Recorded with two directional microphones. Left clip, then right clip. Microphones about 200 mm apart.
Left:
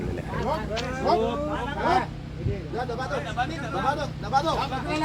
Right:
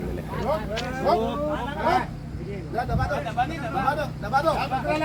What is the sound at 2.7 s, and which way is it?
Speech, 35° right (ahead or behind).